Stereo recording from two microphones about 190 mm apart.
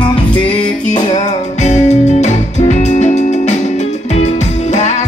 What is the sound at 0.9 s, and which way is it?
Music, 40° left (ahead or behind).